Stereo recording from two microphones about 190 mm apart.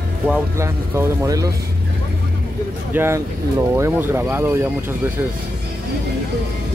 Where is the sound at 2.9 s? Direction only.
10° right (ahead or behind).